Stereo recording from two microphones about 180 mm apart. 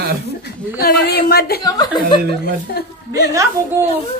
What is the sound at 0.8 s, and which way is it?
Speech, 60° left (ahead or behind).